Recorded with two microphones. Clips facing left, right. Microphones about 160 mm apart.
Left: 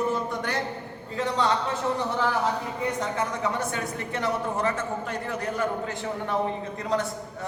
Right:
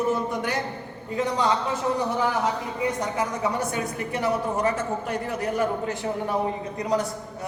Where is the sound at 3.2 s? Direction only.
15° right (ahead or behind).